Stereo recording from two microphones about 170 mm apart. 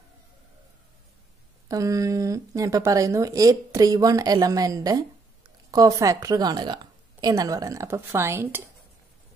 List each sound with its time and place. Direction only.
1.7 s speech: 20° right (ahead or behind)